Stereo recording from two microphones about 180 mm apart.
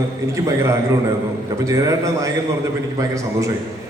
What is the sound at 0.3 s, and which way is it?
A man's voice, 15° right (ahead or behind).